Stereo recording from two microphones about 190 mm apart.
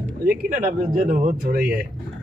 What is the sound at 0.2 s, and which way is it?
Speech, 50° right (ahead or behind).